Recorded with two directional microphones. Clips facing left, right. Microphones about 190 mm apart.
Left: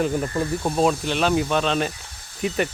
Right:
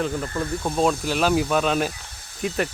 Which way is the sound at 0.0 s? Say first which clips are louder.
Left 3 dB; 10° left (ahead or behind).